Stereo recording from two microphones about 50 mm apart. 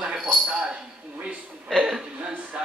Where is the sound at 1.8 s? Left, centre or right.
Centre.